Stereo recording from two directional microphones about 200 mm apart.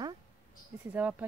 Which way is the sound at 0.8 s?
10° right (ahead or behind).